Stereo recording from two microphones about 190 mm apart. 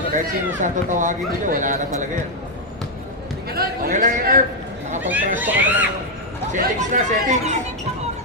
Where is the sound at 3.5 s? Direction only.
55° right (ahead or behind).